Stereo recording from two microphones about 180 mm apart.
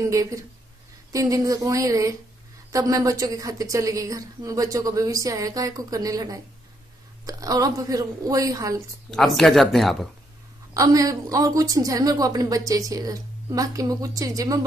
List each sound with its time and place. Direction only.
0.1 s a woman's voice: 20° right (ahead or behind)
9.1 s speech: centre (ahead or behind)
10.7 s a woman's voice: 20° right (ahead or behind)